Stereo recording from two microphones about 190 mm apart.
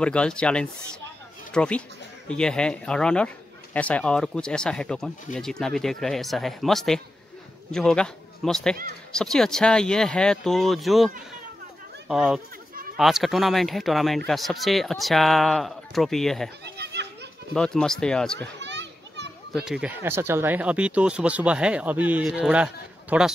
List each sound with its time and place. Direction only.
0.0 s speech: 5° left (ahead or behind)
12.1 s speech: 5° right (ahead or behind)
16.6 s children playing: 60° right (ahead or behind)
17.6 s speech: centre (ahead or behind)
18.6 s children playing: 65° right (ahead or behind)
19.5 s speech: centre (ahead or behind)